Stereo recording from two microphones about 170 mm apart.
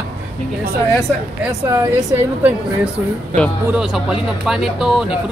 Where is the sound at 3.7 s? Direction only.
5° right (ahead or behind).